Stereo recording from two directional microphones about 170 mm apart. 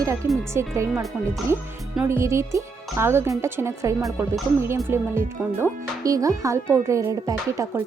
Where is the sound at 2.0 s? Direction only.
15° right (ahead or behind).